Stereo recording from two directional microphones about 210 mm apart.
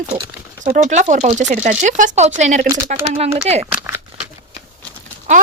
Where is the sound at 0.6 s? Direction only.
35° right (ahead or behind).